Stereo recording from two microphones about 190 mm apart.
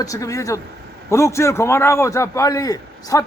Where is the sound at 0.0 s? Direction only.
15° left (ahead or behind).